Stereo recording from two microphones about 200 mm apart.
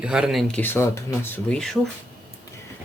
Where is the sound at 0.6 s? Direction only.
10° left (ahead or behind).